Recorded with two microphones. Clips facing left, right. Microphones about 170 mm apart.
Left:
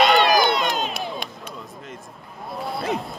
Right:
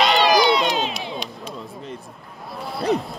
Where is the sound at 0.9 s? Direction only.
45° left (ahead or behind).